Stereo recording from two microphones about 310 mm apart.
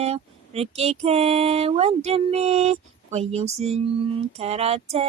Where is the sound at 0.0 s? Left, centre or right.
Centre.